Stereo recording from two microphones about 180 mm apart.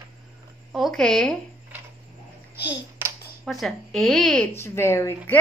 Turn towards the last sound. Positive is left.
turn(degrees=15)  # may be behind; listen again after turning